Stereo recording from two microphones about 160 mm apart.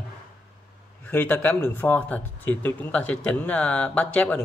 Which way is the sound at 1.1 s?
10° left (ahead or behind).